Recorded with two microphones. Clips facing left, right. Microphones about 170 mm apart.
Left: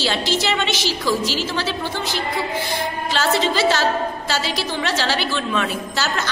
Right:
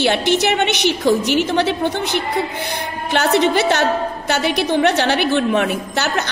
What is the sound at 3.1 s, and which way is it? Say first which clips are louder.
A woman's voice: right 5 dB; 60° right (ahead or behind).